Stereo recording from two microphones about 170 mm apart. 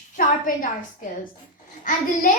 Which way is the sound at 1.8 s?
55° left (ahead or behind).